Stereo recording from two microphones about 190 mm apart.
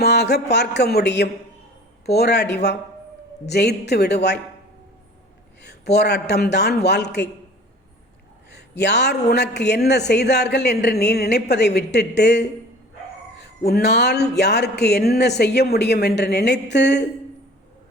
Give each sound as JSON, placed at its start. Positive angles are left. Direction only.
{"t": 0.0, "sound": "speech", "side_deg": 60}
{"t": 5.6, "sound": "speech", "side_deg": 60}
{"t": 8.8, "sound": "speech", "side_deg": 65}